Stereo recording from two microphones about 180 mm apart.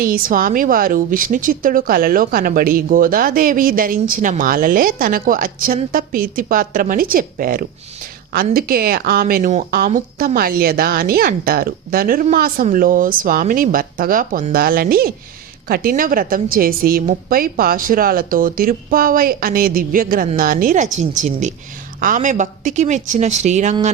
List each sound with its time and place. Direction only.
0.0 s a woman's voice: 50° right (ahead or behind)